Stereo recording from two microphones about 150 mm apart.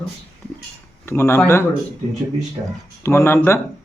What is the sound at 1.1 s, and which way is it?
Speech, 15° left (ahead or behind).